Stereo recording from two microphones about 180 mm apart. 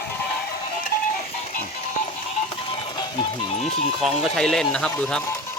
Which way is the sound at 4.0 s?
5° left (ahead or behind).